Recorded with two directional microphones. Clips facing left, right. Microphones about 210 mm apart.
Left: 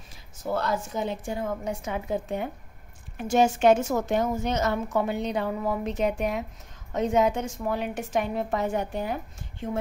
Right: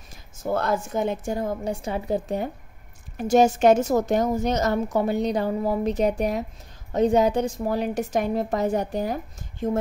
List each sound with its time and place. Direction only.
0.1 s a woman's voice: 50° right (ahead or behind)